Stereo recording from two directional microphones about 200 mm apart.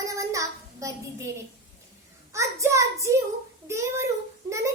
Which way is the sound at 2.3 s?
15° right (ahead or behind).